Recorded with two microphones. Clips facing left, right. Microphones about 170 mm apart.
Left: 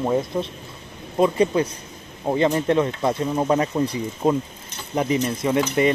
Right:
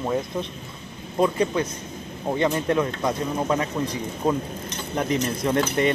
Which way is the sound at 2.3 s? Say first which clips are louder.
Left 3 dB; 25° left (ahead or behind).